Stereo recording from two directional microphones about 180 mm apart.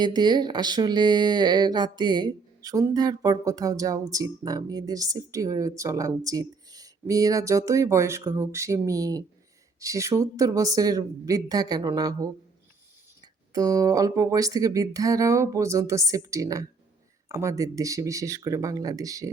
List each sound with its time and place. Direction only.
0.0 s speech: 25° right (ahead or behind)
13.5 s speech: 20° right (ahead or behind)